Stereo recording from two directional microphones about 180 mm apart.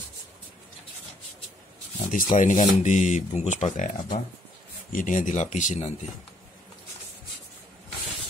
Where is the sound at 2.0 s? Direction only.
45° left (ahead or behind).